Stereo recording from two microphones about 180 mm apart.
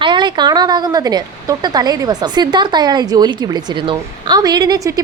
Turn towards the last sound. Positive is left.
turn(degrees=-20)  # may be behind; listen again after turning